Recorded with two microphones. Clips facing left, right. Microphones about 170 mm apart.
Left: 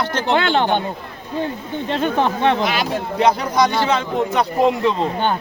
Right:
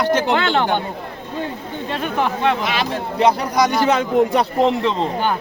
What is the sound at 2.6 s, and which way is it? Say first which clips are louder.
A man's voice: left 1 dB; centre (ahead or behind).